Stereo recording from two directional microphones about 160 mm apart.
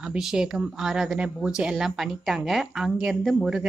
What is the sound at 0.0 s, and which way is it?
A woman's voice, 5° right (ahead or behind).